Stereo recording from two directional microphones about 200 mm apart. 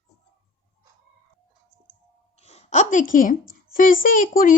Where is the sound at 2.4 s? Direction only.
30° left (ahead or behind).